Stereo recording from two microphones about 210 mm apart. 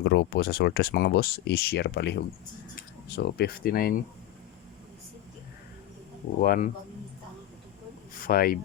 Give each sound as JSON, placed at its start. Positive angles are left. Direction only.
{"t": 0.0, "sound": "speech", "side_deg": 50}
{"t": 6.4, "sound": "speech", "side_deg": 45}
{"t": 8.2, "sound": "speech", "side_deg": 45}